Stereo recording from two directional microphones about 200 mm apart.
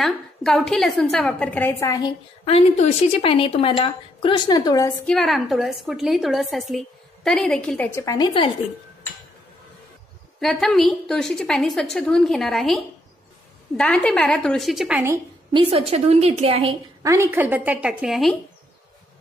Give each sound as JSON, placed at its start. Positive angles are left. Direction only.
{"t": 0.0, "sound": "a woman's voice", "side_deg": 0}
{"t": 5.0, "sound": "a woman's voice", "side_deg": 0}
{"t": 10.4, "sound": "a woman's voice", "side_deg": 0}
{"t": 15.5, "sound": "a woman's voice", "side_deg": -30}
{"t": 17.0, "sound": "a woman's voice", "side_deg": -15}